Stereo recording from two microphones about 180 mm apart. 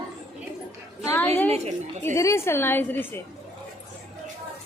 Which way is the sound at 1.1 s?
10° left (ahead or behind).